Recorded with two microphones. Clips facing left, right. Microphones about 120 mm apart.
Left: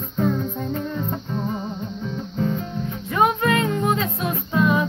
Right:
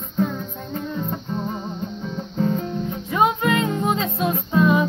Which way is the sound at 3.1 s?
20° right (ahead or behind).